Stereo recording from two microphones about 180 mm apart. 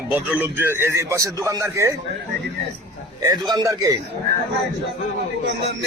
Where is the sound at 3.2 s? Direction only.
20° right (ahead or behind).